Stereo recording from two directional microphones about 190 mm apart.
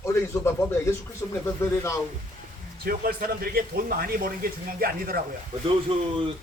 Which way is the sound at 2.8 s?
50° right (ahead or behind).